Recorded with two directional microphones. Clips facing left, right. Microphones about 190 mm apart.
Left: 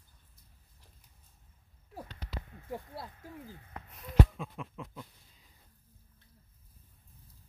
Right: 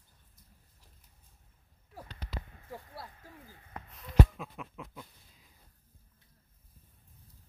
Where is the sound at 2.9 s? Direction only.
20° left (ahead or behind).